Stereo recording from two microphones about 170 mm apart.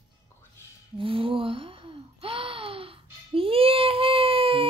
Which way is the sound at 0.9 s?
30° right (ahead or behind).